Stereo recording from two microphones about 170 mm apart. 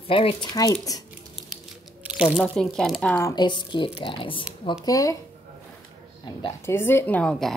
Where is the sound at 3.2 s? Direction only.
20° left (ahead or behind).